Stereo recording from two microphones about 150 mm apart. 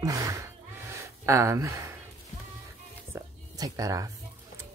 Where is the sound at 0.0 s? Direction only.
25° right (ahead or behind).